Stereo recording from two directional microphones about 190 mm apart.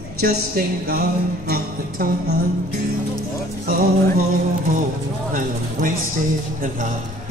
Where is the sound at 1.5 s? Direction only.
55° right (ahead or behind).